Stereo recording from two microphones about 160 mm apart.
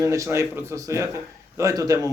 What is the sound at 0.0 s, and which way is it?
Speech, 20° right (ahead or behind).